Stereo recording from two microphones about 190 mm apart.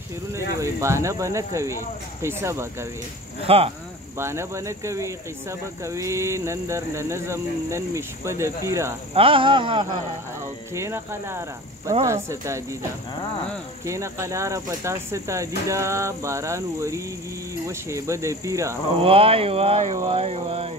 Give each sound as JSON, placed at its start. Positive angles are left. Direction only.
{"t": 0.6, "sound": "speech", "side_deg": -15}
{"t": 3.4, "sound": "speech", "side_deg": -30}
{"t": 4.2, "sound": "speech", "side_deg": -15}
{"t": 9.1, "sound": "speech", "side_deg": -30}
{"t": 10.7, "sound": "speech", "side_deg": -15}
{"t": 13.8, "sound": "speech", "side_deg": -15}
{"t": 18.9, "sound": "speech", "side_deg": -30}